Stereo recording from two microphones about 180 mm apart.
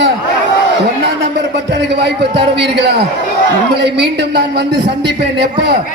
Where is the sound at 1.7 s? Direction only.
65° right (ahead or behind).